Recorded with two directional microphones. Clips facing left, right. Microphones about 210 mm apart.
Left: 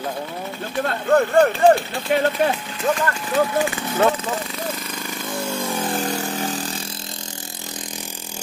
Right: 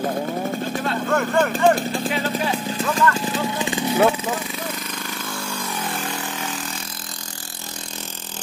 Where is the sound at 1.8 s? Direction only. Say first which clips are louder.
Right 3 dB; 45° right (ahead or behind).